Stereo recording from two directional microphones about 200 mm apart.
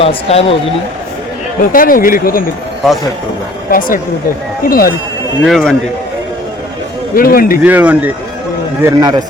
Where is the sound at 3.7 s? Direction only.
45° left (ahead or behind).